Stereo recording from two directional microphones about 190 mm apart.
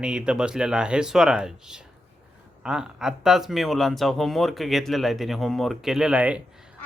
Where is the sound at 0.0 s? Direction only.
5° right (ahead or behind).